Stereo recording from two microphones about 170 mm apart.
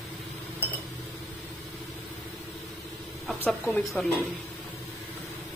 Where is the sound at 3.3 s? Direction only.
Centre (ahead or behind).